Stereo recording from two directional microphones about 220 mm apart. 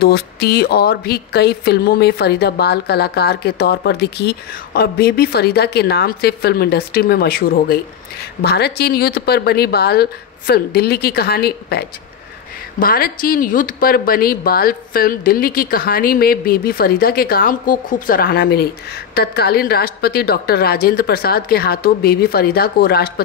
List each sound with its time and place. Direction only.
0.0 s speech: 45° left (ahead or behind)